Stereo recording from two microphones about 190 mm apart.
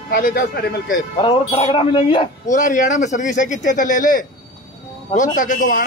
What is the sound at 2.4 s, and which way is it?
Speech, 40° left (ahead or behind).